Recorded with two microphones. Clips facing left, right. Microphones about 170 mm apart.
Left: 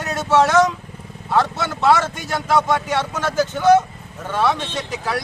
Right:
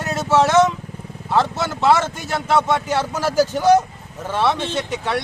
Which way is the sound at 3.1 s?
30° right (ahead or behind).